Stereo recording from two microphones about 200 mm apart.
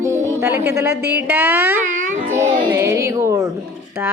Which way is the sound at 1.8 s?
40° right (ahead or behind).